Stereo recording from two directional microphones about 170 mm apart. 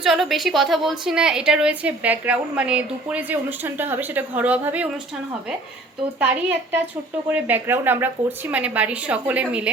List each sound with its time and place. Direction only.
0.0 s a woman's voice: centre (ahead or behind)
6.1 s a woman's voice: 10° right (ahead or behind)